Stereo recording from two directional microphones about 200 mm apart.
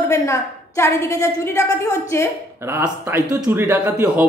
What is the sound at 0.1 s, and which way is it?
A woman's voice, 15° left (ahead or behind).